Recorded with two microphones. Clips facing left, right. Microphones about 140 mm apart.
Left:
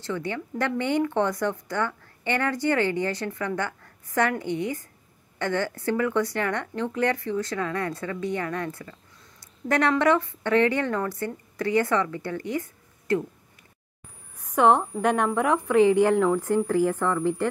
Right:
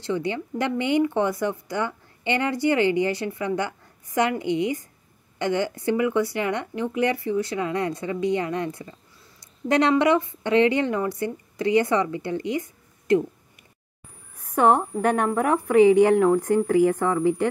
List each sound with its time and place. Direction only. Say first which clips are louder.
0.0 s speech: right 4 dB; 15° right (ahead or behind)
14.3 s speech: even; 10° right (ahead or behind)